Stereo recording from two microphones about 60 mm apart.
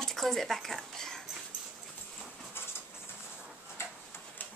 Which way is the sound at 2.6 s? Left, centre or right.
Left.